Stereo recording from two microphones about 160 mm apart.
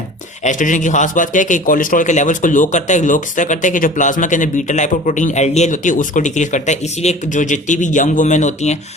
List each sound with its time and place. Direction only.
0.4 s a man's voice: 50° left (ahead or behind)